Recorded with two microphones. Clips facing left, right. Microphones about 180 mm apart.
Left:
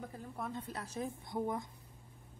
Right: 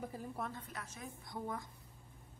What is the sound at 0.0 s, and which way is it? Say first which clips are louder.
Speech: right 1 dB; 5° right (ahead or behind).